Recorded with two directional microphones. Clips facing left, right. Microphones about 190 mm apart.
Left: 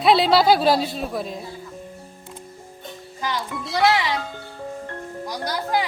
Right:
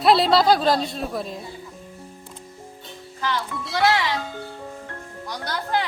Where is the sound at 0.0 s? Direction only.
Centre (ahead or behind).